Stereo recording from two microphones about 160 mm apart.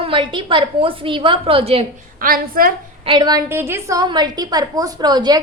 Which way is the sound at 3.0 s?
30° right (ahead or behind).